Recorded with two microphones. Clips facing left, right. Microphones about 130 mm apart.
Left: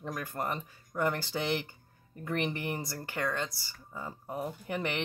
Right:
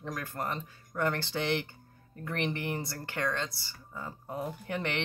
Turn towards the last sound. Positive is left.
turn(degrees=10)  # may be behind; listen again after turning